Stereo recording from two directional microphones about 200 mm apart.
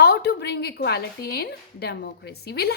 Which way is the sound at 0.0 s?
55° left (ahead or behind).